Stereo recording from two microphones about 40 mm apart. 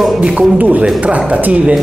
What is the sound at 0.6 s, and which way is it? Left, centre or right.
Speech, right.